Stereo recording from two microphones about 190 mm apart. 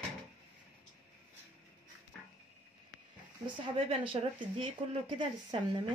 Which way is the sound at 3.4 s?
30° right (ahead or behind).